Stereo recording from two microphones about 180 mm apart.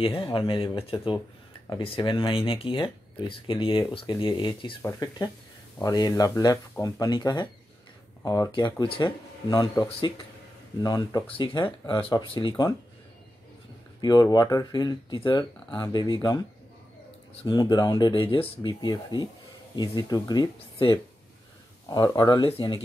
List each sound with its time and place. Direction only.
0.0 s speech: 25° left (ahead or behind)
14.0 s speech: 20° left (ahead or behind)